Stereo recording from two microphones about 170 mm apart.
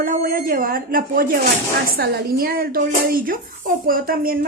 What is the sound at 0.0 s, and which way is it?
A woman's voice, 55° right (ahead or behind).